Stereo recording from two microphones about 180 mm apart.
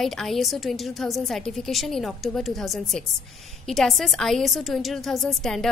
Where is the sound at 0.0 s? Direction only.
Centre (ahead or behind).